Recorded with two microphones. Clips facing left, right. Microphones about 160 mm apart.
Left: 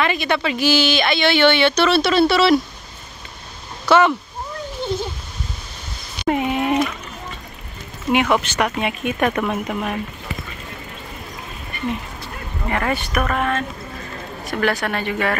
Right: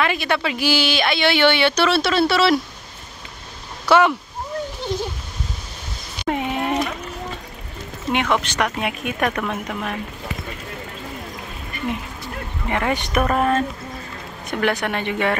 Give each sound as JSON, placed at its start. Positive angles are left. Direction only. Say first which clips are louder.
{"t": 0.0, "sound": "speech", "louder": "left 1 dB", "side_deg": -5}
{"t": 3.8, "sound": "speech", "louder": "left 1 dB", "side_deg": -10}
{"t": 6.2, "sound": "a sound", "louder": "left 3 dB", "side_deg": 5}
{"t": 8.1, "sound": "speech", "louder": "left 3 dB", "side_deg": 5}
{"t": 12.6, "sound": "speech", "louder": "even", "side_deg": -15}
{"t": 14.5, "sound": "speech", "louder": "even", "side_deg": -20}